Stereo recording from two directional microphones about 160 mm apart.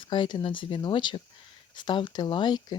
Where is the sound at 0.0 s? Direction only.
30° left (ahead or behind).